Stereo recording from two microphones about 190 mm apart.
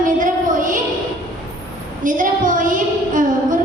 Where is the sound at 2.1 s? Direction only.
45° right (ahead or behind).